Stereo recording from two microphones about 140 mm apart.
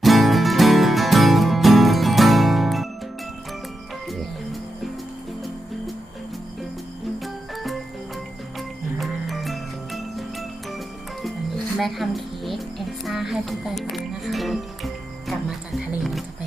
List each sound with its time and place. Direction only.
0.0 s music: centre (ahead or behind)
7.5 s music: centre (ahead or behind)
11.8 s music: centre (ahead or behind)